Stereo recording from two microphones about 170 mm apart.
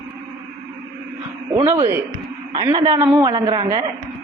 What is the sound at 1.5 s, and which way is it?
Speech, 15° right (ahead or behind).